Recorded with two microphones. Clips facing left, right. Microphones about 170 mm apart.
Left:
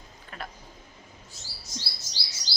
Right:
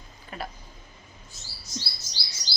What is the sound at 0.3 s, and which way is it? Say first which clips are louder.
Speech: right 4 dB; 5° right (ahead or behind).